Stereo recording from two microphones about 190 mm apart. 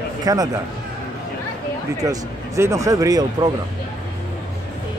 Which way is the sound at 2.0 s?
15° right (ahead or behind).